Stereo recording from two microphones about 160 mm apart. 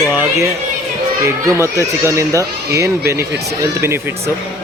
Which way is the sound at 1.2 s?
15° right (ahead or behind).